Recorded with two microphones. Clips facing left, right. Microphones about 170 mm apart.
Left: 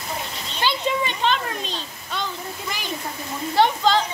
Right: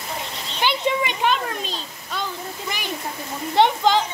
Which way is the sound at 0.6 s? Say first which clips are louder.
Right 1 dB; 15° right (ahead or behind).